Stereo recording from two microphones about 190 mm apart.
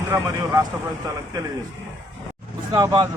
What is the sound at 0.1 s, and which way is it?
Speech, 15° right (ahead or behind).